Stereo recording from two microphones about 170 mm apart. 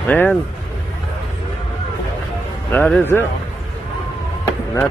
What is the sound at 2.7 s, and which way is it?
Speech, 10° left (ahead or behind).